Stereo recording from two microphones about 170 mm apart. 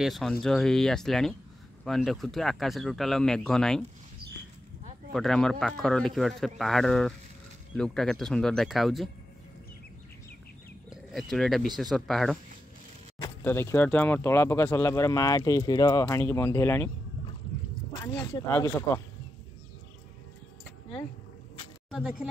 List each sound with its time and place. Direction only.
0.0 s speech: centre (ahead or behind)
5.1 s speech: centre (ahead or behind)
11.1 s speech: centre (ahead or behind)
13.4 s speech: 15° left (ahead or behind)
18.0 s speech: 25° left (ahead or behind)
18.5 s speech: 10° left (ahead or behind)
21.9 s speech: 5° right (ahead or behind)